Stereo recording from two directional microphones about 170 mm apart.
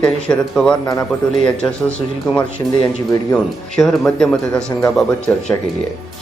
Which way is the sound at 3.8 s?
5° left (ahead or behind).